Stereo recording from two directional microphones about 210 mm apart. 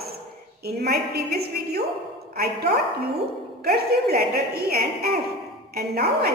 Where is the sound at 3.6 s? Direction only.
45° right (ahead or behind).